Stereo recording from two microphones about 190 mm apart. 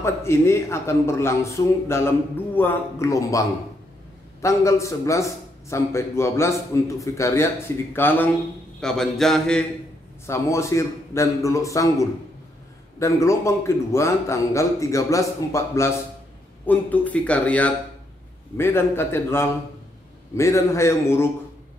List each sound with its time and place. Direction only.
0.0 s speech: 15° left (ahead or behind)
10.2 s speech: 15° left (ahead or behind)